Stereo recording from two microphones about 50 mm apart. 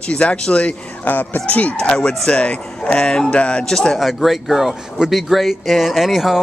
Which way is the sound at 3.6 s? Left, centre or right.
Centre.